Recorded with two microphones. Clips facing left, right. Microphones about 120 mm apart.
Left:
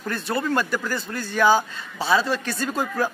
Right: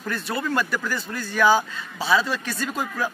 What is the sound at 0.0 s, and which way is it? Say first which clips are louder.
Speech: left 2 dB; 30° left (ahead or behind).